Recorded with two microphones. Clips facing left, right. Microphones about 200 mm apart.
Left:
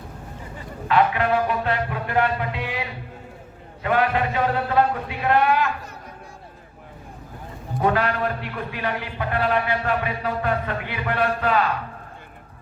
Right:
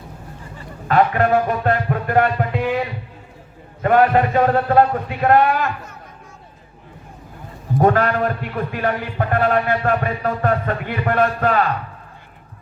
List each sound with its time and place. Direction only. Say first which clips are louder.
0.9 s music: right 4 dB; 45° right (ahead or behind)
3.8 s a man's voice: right 7 dB; 45° right (ahead or behind)
7.8 s a man's voice: right 5 dB; 45° right (ahead or behind)